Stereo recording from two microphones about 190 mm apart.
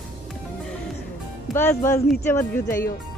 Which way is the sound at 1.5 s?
15° left (ahead or behind).